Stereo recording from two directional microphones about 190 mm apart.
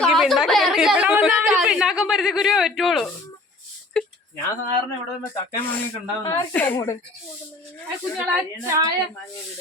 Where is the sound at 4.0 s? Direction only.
5° left (ahead or behind).